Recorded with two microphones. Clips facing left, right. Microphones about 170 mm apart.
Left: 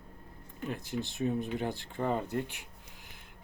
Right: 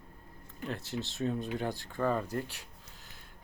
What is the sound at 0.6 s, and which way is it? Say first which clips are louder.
Speech: left 1 dB; 15° left (ahead or behind).